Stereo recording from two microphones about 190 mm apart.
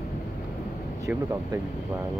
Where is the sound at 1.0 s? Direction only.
15° right (ahead or behind).